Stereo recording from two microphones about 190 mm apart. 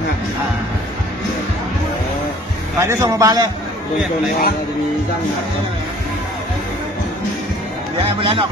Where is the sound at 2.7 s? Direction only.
15° right (ahead or behind).